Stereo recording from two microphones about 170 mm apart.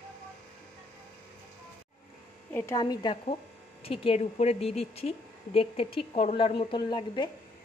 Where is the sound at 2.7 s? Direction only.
25° left (ahead or behind).